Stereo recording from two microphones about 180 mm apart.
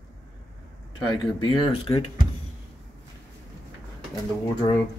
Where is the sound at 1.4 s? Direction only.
30° left (ahead or behind).